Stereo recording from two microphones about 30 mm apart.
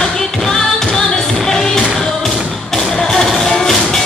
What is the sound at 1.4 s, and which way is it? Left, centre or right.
Music, left.